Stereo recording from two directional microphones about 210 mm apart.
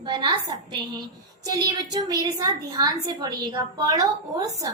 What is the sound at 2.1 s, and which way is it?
A woman's voice, 15° right (ahead or behind).